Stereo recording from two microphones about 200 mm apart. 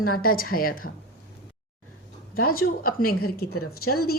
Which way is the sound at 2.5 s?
45° left (ahead or behind).